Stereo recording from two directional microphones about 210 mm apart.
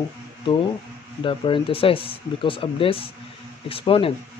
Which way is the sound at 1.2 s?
25° left (ahead or behind).